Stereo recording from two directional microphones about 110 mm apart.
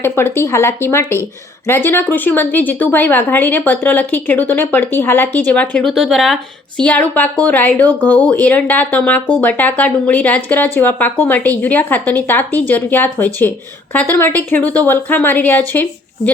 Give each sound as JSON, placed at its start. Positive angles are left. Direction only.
{"t": 0.0, "sound": "speech", "side_deg": 20}
{"t": 5.8, "sound": "speech", "side_deg": 0}